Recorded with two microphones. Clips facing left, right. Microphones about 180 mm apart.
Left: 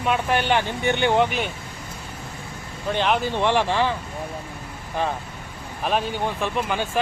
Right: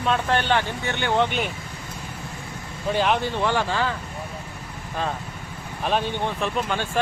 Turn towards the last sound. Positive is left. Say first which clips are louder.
# left 1 dB
turn(degrees=0)  # may be behind; listen again after turning